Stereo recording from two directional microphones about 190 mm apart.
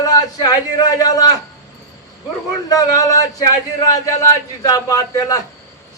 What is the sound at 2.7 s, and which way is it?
Speech, 20° left (ahead or behind).